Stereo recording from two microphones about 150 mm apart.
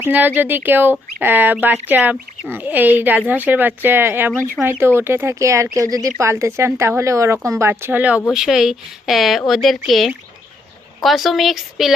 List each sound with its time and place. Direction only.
0.0 s speech: 10° right (ahead or behind)